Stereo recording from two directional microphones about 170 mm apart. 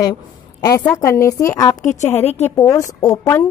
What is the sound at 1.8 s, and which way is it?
Speech, 45° left (ahead or behind).